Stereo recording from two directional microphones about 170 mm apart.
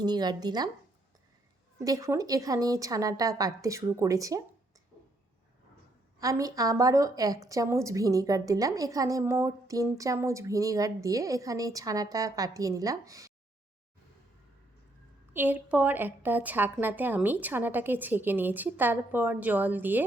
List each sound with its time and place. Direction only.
0.0 s a woman's voice: 25° right (ahead or behind)
1.8 s a woman's voice: 20° right (ahead or behind)
6.1 s a woman's voice: 20° right (ahead or behind)
15.3 s a woman's voice: 10° right (ahead or behind)